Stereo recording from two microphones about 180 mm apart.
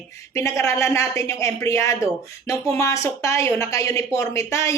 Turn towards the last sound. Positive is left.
turn(degrees=15)  # may be behind; listen again after turning